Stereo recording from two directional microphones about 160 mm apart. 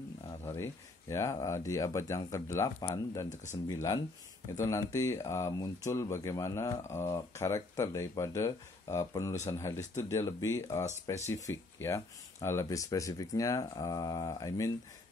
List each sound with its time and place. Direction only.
0.5 s speech: 15° left (ahead or behind)